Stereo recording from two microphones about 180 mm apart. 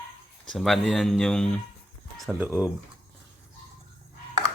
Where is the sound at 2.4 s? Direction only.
10° right (ahead or behind).